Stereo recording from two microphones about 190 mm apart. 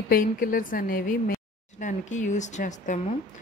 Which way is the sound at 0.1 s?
45° left (ahead or behind).